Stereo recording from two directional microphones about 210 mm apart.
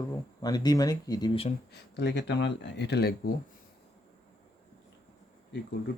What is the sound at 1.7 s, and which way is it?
Speech, 55° left (ahead or behind).